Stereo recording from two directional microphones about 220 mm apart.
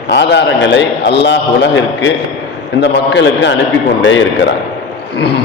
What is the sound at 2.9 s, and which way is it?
A man's voice, 55° left (ahead or behind).